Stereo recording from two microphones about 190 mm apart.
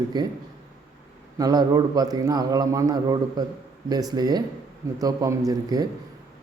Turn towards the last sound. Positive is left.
turn(degrees=-20)  # may be behind; listen again after turning